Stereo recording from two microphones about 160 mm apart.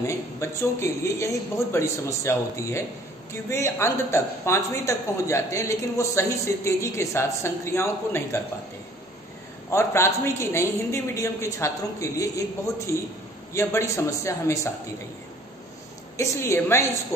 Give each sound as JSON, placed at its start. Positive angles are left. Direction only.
{"t": 0.0, "sound": "speech", "side_deg": 20}
{"t": 9.7, "sound": "a man's voice", "side_deg": 15}
{"t": 16.2, "sound": "speech", "side_deg": 15}